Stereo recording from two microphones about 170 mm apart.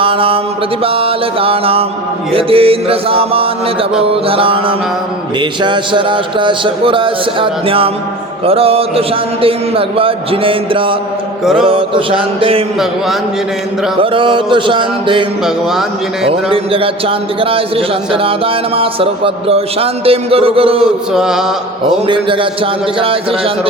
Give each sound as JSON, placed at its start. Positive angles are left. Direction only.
{"t": 0.0, "sound": "mantra", "side_deg": -30}
{"t": 0.9, "sound": "a man's voice", "side_deg": -35}
{"t": 14.0, "sound": "a man's voice", "side_deg": -30}
{"t": 16.3, "sound": "a man's voice", "side_deg": -30}
{"t": 21.1, "sound": "mantra", "side_deg": -5}
{"t": 21.8, "sound": "a man's voice", "side_deg": -30}